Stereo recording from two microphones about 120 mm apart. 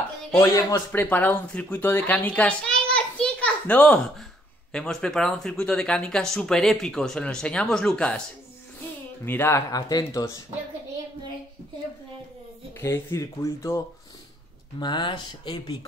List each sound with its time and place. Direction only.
0.4 s speech: 30° left (ahead or behind)
0.9 s a child's voice: 15° left (ahead or behind)
9.2 s speech: 20° left (ahead or behind)
9.7 s speech: 30° left (ahead or behind)
12.8 s speech: 25° left (ahead or behind)
14.8 s speech: 40° left (ahead or behind)